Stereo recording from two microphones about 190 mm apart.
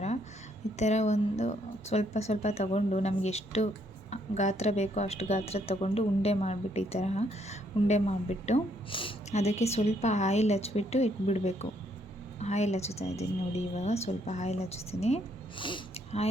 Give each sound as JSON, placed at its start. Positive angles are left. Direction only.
{"t": 0.8, "sound": "speech", "side_deg": 35}